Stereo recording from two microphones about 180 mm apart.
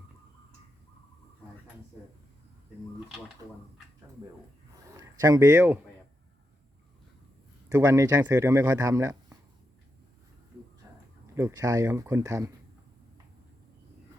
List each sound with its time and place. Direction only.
4.9 s speech: 20° right (ahead or behind)
7.7 s a man's voice: 15° right (ahead or behind)
11.3 s a man's voice: 15° right (ahead or behind)